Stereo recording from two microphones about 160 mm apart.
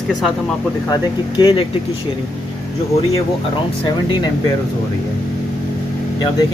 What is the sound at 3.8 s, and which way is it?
Speech, 30° left (ahead or behind).